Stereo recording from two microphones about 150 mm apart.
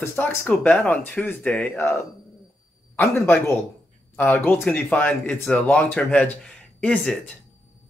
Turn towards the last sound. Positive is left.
turn(degrees=5)  # may be behind; listen again after turning